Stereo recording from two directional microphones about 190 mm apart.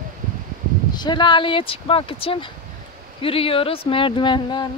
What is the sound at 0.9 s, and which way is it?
Speech, 25° left (ahead or behind).